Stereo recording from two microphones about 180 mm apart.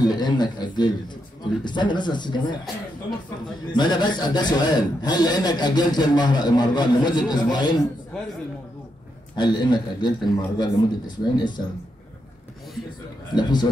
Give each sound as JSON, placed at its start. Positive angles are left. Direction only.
{"t": 0.0, "sound": "a man's voice", "side_deg": 20}
{"t": 3.7, "sound": "a man's voice", "side_deg": 25}
{"t": 9.3, "sound": "a man's voice", "side_deg": 25}
{"t": 13.3, "sound": "a man's voice", "side_deg": 25}